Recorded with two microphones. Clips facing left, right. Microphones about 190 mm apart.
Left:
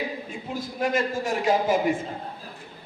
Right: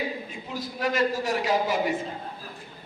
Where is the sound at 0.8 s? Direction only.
50° left (ahead or behind).